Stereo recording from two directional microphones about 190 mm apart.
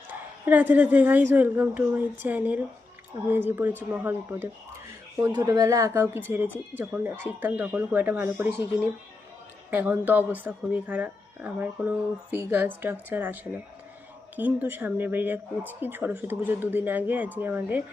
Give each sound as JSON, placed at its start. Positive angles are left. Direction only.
{"t": 0.4, "sound": "speech", "side_deg": -10}
{"t": 9.6, "sound": "speech", "side_deg": -10}